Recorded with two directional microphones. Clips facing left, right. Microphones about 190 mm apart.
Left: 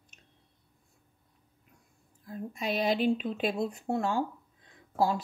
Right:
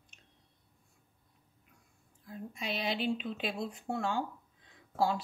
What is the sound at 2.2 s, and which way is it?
Speech, 45° left (ahead or behind).